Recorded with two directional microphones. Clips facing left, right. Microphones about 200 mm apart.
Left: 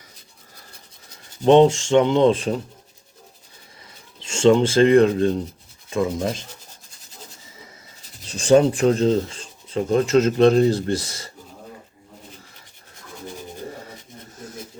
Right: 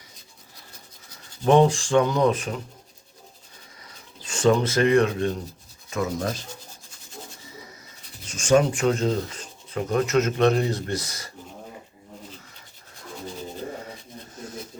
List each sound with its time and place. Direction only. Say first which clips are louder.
1.5 s speech: left 4 dB; 25° left (ahead or behind)
4.2 s speech: left 5 dB; 25° left (ahead or behind)
8.3 s speech: left 4 dB; 35° left (ahead or behind)